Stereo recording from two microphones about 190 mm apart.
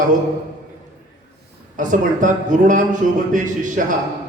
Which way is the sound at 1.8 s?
40° right (ahead or behind).